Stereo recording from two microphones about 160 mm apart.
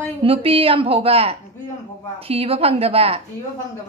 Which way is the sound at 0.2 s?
35° right (ahead or behind).